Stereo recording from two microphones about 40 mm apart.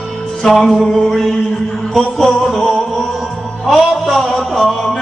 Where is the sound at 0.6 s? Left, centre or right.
Centre.